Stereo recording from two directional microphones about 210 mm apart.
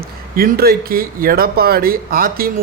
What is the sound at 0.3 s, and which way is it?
Speech, 45° right (ahead or behind).